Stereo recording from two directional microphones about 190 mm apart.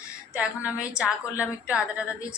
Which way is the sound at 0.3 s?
5° right (ahead or behind).